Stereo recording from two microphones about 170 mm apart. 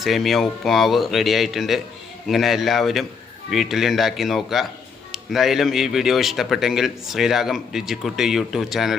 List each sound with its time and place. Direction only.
0.0 s speech: centre (ahead or behind)